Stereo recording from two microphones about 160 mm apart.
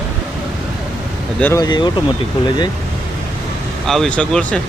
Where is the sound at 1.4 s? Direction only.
15° left (ahead or behind).